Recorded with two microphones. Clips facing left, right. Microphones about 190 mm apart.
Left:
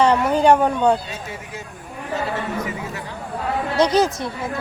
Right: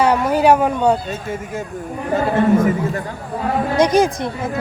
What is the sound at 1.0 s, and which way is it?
Speech, 50° right (ahead or behind).